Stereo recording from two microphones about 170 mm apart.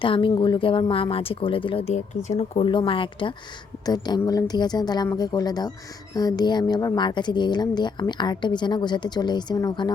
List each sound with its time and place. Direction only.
0.0 s speech: 30° left (ahead or behind)
2.6 s speech: 30° left (ahead or behind)